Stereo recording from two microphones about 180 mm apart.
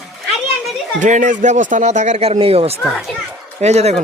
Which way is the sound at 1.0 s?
45° right (ahead or behind).